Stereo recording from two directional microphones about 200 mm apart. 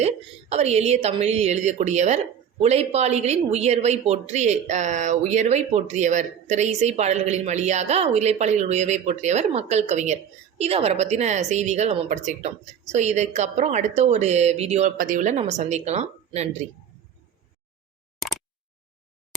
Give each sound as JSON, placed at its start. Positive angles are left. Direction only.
{"t": 0.5, "sound": "a woman's voice", "side_deg": -35}